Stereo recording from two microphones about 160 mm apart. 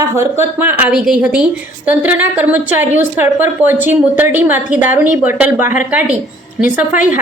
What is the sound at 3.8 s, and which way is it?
A woman's voice, 10° right (ahead or behind).